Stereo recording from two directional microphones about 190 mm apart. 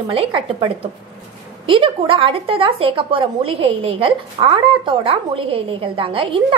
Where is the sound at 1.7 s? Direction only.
25° right (ahead or behind).